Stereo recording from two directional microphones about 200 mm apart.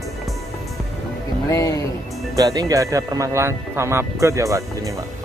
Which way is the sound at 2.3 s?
20° right (ahead or behind).